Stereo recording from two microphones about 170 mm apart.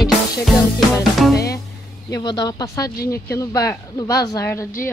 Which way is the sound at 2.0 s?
25° left (ahead or behind).